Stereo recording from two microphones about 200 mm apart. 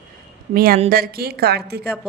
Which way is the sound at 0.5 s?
45° right (ahead or behind).